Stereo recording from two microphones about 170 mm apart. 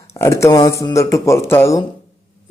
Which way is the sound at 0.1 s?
15° left (ahead or behind).